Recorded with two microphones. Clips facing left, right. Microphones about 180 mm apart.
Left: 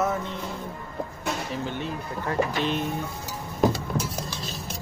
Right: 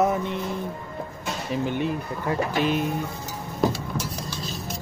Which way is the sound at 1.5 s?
15° right (ahead or behind).